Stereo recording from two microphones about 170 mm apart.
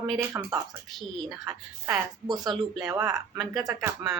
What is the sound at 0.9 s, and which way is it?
Speech, centre (ahead or behind).